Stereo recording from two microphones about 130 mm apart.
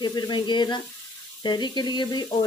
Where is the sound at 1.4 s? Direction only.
35° left (ahead or behind).